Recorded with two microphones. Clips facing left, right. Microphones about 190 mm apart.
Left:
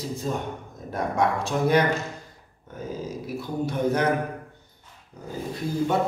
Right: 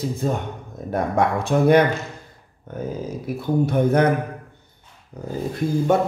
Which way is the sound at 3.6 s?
55° right (ahead or behind).